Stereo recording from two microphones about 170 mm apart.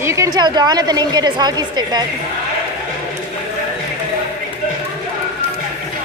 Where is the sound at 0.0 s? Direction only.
15° right (ahead or behind).